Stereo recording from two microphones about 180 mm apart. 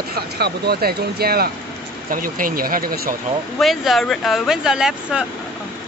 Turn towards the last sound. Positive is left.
turn(degrees=-5)  # may be behind; listen again after turning